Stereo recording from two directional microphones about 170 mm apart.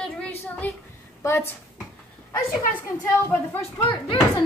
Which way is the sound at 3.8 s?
30° left (ahead or behind).